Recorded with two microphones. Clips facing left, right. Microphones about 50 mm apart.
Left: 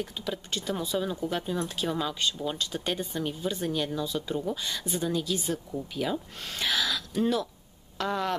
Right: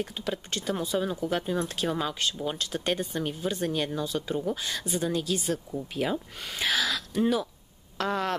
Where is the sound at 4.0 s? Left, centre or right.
Centre.